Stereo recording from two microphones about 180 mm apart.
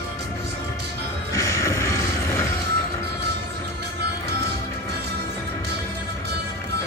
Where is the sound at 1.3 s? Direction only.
15° left (ahead or behind).